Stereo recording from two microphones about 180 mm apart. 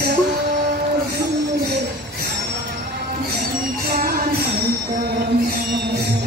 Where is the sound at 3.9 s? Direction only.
55° right (ahead or behind).